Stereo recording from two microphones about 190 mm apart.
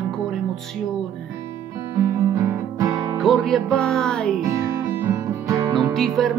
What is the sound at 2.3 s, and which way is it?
Music, 15° right (ahead or behind).